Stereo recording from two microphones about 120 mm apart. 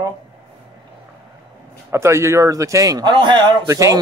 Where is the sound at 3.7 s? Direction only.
25° right (ahead or behind).